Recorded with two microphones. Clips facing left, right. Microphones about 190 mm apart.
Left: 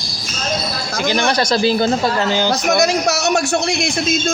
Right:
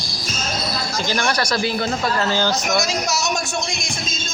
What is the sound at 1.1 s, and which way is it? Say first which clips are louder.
Speech: left 6 dB; 20° left (ahead or behind).